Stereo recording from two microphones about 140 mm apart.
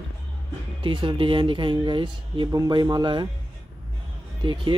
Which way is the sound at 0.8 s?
35° right (ahead or behind).